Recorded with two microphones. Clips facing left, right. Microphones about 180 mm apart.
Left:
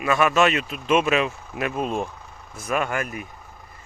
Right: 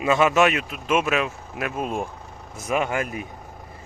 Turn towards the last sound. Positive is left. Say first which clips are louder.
# right 1 dB
turn(degrees=-15)  # may be behind; listen again after turning